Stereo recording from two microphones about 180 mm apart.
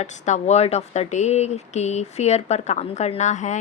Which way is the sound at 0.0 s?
40° left (ahead or behind).